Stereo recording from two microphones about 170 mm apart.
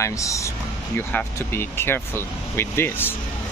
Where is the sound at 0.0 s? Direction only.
20° left (ahead or behind).